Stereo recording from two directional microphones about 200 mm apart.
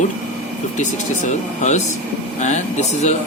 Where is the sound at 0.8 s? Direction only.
35° left (ahead or behind).